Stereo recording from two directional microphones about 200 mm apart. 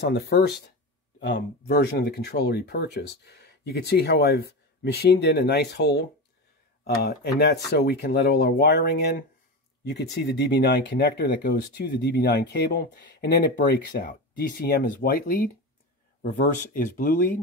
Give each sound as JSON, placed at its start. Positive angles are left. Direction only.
{"t": 0.1, "sound": "speech", "side_deg": 55}